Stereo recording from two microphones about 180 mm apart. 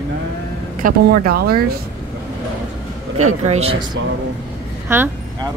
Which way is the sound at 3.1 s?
40° right (ahead or behind).